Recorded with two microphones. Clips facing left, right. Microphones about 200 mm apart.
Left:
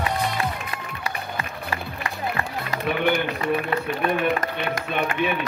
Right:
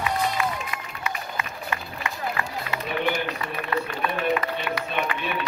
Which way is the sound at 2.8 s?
50° left (ahead or behind).